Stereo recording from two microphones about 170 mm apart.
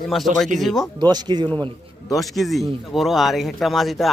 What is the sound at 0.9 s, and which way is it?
Speech, 25° right (ahead or behind).